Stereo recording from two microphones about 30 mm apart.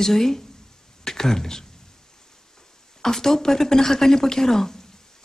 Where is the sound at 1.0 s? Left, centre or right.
Centre.